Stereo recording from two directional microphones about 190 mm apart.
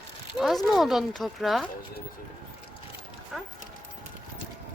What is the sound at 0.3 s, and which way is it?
Speech, centre (ahead or behind).